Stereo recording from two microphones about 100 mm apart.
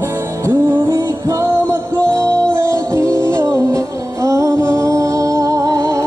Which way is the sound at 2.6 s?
30° right (ahead or behind).